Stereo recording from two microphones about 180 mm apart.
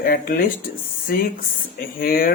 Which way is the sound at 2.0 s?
55° left (ahead or behind).